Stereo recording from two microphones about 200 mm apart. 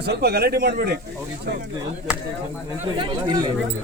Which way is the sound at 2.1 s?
5° right (ahead or behind).